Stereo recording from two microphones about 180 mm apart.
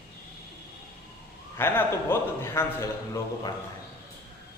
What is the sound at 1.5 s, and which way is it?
A man's voice, 15° left (ahead or behind).